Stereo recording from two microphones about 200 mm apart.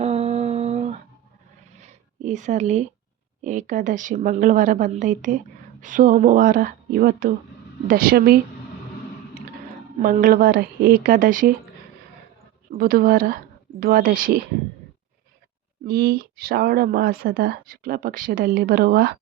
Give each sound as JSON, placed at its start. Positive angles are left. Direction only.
{"t": 0.0, "sound": "a sound", "side_deg": -30}
{"t": 3.4, "sound": "a woman's voice", "side_deg": -40}
{"t": 10.0, "sound": "speech", "side_deg": -45}
{"t": 12.7, "sound": "a woman's voice", "side_deg": -45}
{"t": 15.9, "sound": "speech", "side_deg": -50}